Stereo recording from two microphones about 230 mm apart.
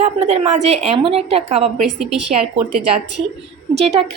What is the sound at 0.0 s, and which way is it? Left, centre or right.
A woman's voice, right.